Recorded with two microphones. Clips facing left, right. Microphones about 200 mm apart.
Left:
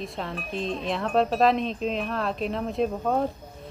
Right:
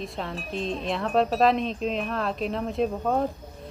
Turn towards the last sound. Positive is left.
turn(degrees=0)  # may be behind; listen again after turning